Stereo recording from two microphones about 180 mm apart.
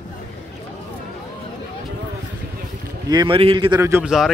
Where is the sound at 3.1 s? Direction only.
25° right (ahead or behind).